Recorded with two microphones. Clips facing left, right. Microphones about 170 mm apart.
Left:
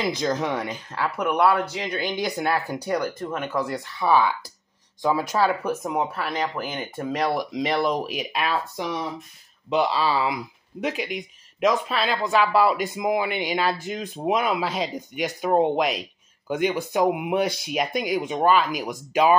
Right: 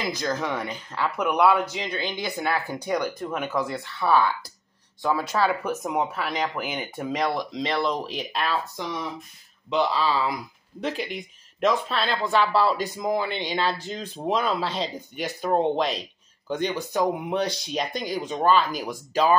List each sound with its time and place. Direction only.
0.1 s speech: 20° left (ahead or behind); by 7.2 s 5° right (ahead or behind)
7.2 s speech: 10° left (ahead or behind)